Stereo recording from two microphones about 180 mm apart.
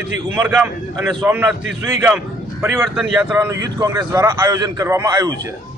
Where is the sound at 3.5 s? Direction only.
20° right (ahead or behind).